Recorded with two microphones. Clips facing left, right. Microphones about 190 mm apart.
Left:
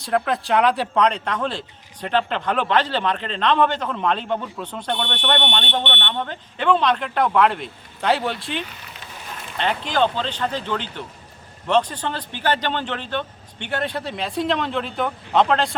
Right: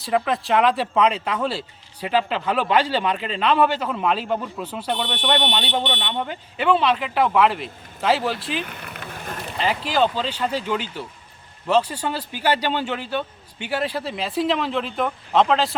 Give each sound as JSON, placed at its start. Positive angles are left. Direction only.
{"t": 0.0, "sound": "speech", "side_deg": 0}
{"t": 8.6, "sound": "vehicle", "side_deg": -55}
{"t": 9.6, "sound": "speech", "side_deg": -5}